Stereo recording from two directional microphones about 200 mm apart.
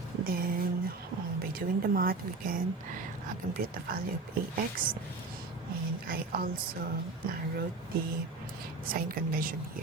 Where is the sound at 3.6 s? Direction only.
45° right (ahead or behind).